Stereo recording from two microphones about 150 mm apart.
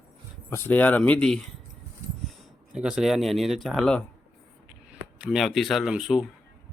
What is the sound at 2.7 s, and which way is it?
Speech, 5° right (ahead or behind).